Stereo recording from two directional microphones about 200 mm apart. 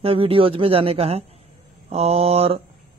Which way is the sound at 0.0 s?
25° right (ahead or behind).